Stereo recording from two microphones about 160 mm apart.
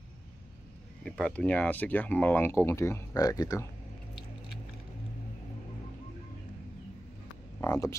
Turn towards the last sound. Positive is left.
turn(degrees=15)  # may be behind; listen again after turning